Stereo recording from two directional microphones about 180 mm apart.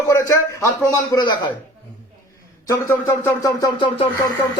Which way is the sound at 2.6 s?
20° left (ahead or behind).